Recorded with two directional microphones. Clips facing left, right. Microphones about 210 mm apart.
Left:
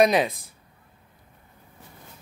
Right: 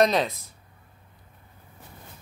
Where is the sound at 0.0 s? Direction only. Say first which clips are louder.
Left 2 dB; 15° left (ahead or behind).